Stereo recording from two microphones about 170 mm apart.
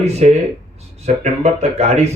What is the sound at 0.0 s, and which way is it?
Speech, 40° right (ahead or behind).